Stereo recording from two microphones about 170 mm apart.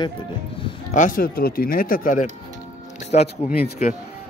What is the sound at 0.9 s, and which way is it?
Speech, 55° left (ahead or behind).